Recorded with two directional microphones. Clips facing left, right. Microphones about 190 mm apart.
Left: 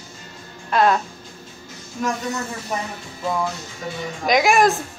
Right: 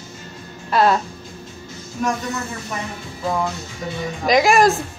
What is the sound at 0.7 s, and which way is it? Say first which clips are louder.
Speech: right 1 dB; 5° right (ahead or behind).